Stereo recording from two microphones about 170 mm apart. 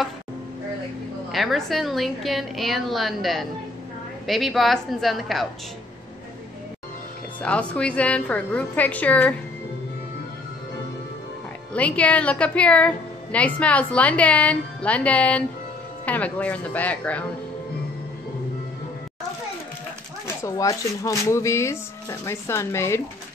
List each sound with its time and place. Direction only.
1.3 s a woman's voice: centre (ahead or behind)
7.4 s a woman's voice: 5° left (ahead or behind)
11.7 s a woman's voice: 10° left (ahead or behind)
20.4 s a woman's voice: 20° left (ahead or behind)